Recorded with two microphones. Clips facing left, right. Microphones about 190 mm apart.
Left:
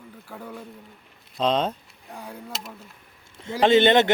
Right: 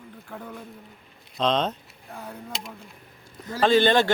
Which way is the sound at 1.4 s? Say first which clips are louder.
Left 1 dB; 10° left (ahead or behind).